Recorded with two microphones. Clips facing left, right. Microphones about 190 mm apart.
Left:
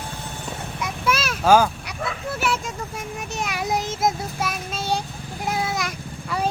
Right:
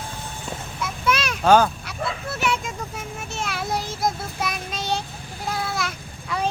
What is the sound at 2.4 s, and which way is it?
Speech, 5° left (ahead or behind).